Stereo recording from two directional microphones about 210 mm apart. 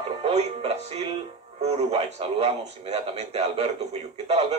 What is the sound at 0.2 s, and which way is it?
A man's voice, 30° right (ahead or behind).